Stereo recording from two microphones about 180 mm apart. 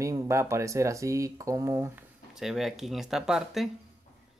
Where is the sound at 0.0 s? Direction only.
15° right (ahead or behind).